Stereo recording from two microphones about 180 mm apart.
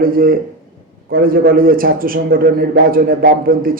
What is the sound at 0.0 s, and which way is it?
A man's voice, 55° right (ahead or behind).